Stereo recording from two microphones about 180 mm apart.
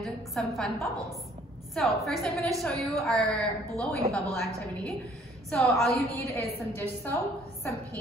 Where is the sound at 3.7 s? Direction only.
20° right (ahead or behind).